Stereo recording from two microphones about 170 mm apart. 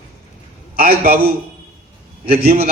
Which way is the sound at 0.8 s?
60° right (ahead or behind).